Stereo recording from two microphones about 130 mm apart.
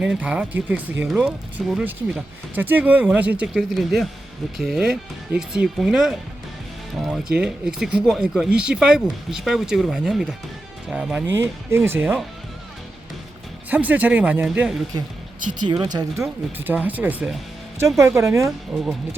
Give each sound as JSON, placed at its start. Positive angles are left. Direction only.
{"t": 0.0, "sound": "speech", "side_deg": -5}
{"t": 7.3, "sound": "speech", "side_deg": -5}
{"t": 11.3, "sound": "speech", "side_deg": -20}
{"t": 13.7, "sound": "speech", "side_deg": -10}
{"t": 15.4, "sound": "speech", "side_deg": -90}
{"t": 15.6, "sound": "speech", "side_deg": -35}
{"t": 16.6, "sound": "speech", "side_deg": -15}
{"t": 17.9, "sound": "speech", "side_deg": -20}